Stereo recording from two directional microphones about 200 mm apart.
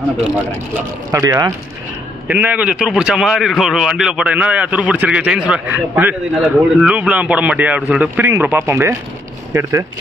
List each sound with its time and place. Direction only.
1.1 s a man's voice: 15° right (ahead or behind)